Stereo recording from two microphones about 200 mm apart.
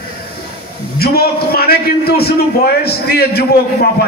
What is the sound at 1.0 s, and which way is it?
A man's voice, 50° left (ahead or behind).